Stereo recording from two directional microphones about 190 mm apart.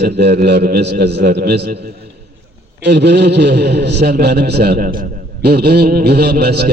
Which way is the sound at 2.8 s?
65° right (ahead or behind).